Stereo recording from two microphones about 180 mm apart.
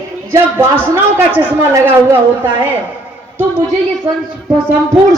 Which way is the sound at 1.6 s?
15° right (ahead or behind).